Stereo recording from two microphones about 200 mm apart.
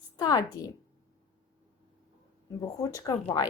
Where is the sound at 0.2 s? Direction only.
20° left (ahead or behind).